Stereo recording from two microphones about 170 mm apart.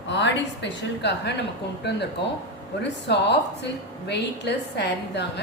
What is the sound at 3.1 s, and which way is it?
A woman's voice, 85° left.